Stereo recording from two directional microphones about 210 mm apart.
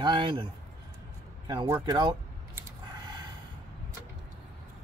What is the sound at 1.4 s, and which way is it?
Vehicle, 15° right (ahead or behind).